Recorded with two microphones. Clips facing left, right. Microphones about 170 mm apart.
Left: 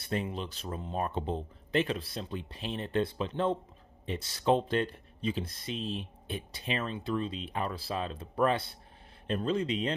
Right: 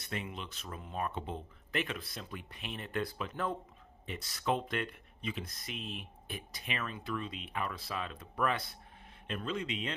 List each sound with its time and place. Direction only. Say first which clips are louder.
0.0 s speech: left 7 dB; 35° left (ahead or behind)